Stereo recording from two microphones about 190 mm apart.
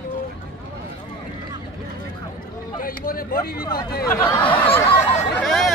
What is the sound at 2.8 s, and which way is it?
Speech, 50° left (ahead or behind).